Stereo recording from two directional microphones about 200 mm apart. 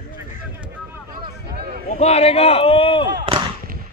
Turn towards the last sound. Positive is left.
turn(degrees=-30)  # may be behind; listen again after turning